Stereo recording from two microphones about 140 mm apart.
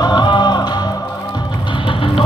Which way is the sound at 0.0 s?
30° left (ahead or behind).